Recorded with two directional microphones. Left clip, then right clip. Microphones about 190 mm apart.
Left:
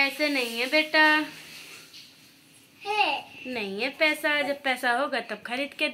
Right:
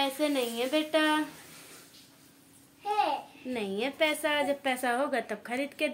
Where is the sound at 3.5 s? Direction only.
10° right (ahead or behind).